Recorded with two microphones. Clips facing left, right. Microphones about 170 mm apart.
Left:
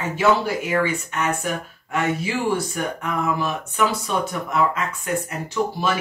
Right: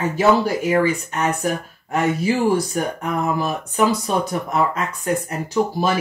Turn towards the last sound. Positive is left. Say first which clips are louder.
# right 3 dB
turn(degrees=-40)  # may be behind; listen again after turning